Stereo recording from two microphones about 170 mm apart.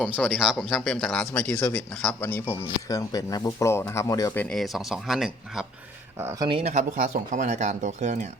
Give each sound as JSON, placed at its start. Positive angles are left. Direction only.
{"t": 0.0, "sound": "speech", "side_deg": 5}
{"t": 4.4, "sound": "speech", "side_deg": 5}
{"t": 6.1, "sound": "speech", "side_deg": -15}
{"t": 6.5, "sound": "speech", "side_deg": -40}